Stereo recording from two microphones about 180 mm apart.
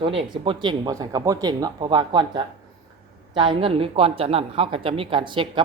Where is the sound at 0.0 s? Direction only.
25° right (ahead or behind).